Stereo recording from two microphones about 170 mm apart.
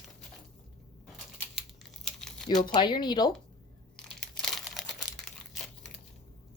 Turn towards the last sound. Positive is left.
turn(degrees=5)  # may be behind; listen again after turning